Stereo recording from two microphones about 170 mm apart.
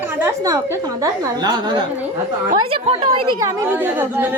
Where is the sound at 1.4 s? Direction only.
25° right (ahead or behind).